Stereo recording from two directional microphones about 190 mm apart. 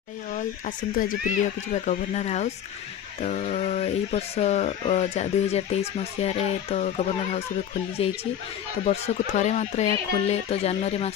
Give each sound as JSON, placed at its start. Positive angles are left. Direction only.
{"t": 0.3, "sound": "speech", "side_deg": 45}